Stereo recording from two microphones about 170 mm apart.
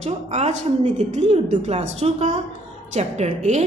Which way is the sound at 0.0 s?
40° right (ahead or behind).